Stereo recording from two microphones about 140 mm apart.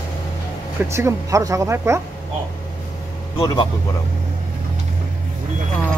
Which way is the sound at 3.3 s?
25° left (ahead or behind).